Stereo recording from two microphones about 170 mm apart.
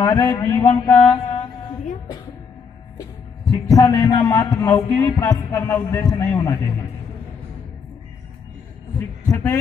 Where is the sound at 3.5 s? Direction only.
20° left (ahead or behind).